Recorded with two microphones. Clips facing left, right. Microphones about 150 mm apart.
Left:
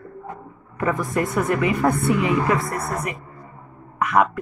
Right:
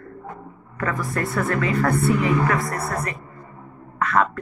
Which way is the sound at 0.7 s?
20° left (ahead or behind).